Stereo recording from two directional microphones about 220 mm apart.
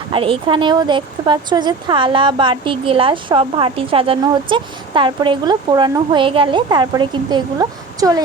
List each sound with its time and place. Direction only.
0.1 s speech: 25° right (ahead or behind)